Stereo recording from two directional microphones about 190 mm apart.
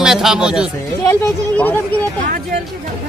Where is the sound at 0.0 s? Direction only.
Centre (ahead or behind).